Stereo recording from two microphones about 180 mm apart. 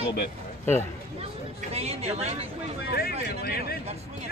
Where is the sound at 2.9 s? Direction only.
60° left (ahead or behind).